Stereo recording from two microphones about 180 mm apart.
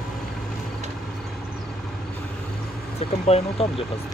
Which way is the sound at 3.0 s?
35° left (ahead or behind).